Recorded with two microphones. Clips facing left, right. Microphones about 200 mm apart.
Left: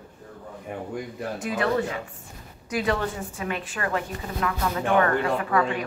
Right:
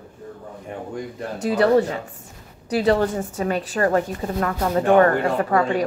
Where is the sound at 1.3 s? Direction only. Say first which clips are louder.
Right 8 dB; 35° right (ahead or behind).